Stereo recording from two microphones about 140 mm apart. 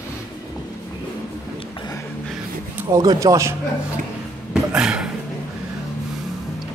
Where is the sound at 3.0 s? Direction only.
25° right (ahead or behind).